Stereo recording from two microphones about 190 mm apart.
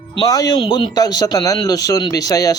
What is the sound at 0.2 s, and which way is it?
Speech, 20° left (ahead or behind).